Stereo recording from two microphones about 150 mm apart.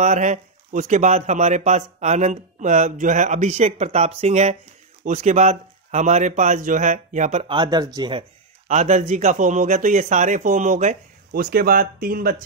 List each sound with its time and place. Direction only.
0.0 s speech: 50° right (ahead or behind)
7.4 s speech: 30° right (ahead or behind)
8.6 s speech: 50° right (ahead or behind)
11.3 s speech: 75° right (ahead or behind)